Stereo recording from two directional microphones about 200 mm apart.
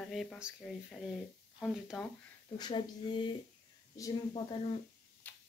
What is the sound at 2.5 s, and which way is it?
A woman's voice, 20° left (ahead or behind).